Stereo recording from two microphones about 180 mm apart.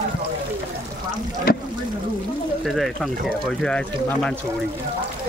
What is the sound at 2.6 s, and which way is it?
Speech, centre (ahead or behind).